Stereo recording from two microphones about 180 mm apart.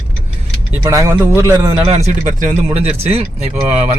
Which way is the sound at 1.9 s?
40° right (ahead or behind).